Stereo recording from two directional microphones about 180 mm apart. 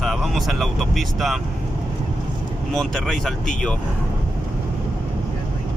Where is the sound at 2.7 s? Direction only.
5° left (ahead or behind).